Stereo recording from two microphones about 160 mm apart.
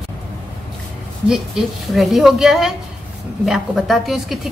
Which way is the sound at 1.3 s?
Centre (ahead or behind).